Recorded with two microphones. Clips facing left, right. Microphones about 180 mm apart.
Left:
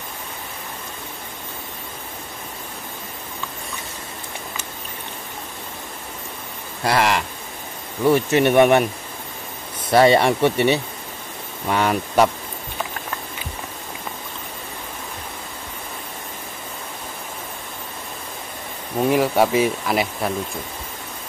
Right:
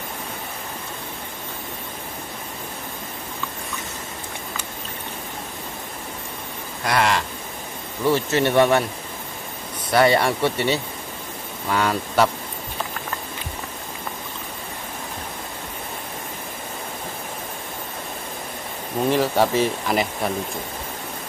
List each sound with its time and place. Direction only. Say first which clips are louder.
6.8 s a sound: left 2 dB; 25° left (ahead or behind)
8.1 s speech: left 3 dB; 15° left (ahead or behind)
9.8 s speech: left 3 dB; 25° left (ahead or behind)
19.0 s speech: left 2 dB; 10° left (ahead or behind)